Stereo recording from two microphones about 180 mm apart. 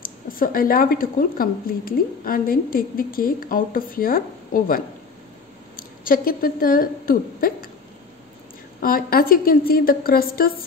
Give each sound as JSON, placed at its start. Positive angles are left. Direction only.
{"t": 0.0, "sound": "speech", "side_deg": 50}
{"t": 8.8, "sound": "speech", "side_deg": 55}